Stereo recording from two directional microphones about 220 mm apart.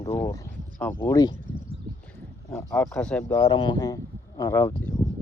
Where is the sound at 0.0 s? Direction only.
10° left (ahead or behind).